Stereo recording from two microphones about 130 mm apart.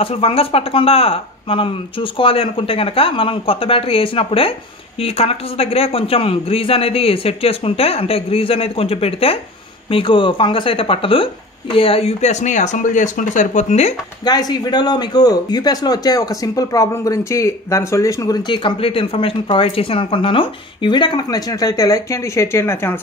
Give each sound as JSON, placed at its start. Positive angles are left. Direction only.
{"t": 0.0, "sound": "speech", "side_deg": 50}
{"t": 14.2, "sound": "speech", "side_deg": 30}